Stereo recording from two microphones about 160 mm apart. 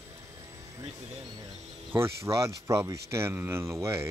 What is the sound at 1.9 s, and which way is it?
Speech, 15° right (ahead or behind).